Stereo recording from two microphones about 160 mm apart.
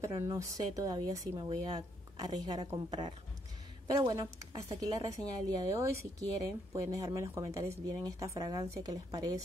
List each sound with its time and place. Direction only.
0.0 s a woman's voice: 20° right (ahead or behind)